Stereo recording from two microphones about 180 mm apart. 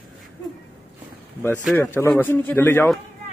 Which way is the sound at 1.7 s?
10° left (ahead or behind).